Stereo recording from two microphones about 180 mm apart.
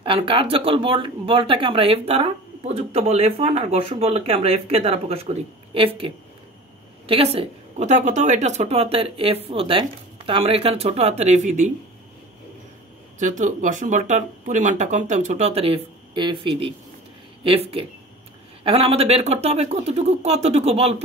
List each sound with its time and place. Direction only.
0.0 s speech: 30° right (ahead or behind)
13.2 s speech: 45° right (ahead or behind)